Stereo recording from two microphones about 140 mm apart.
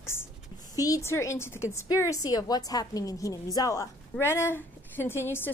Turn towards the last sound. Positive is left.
turn(degrees=15)  # may be behind; listen again after turning